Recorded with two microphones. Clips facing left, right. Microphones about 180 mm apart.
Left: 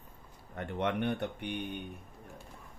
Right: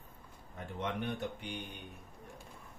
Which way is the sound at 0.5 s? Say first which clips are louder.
Left 6 dB; 70° left (ahead or behind).